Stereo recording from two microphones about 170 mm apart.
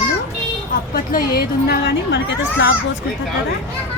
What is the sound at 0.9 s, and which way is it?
Speech, 60° left (ahead or behind).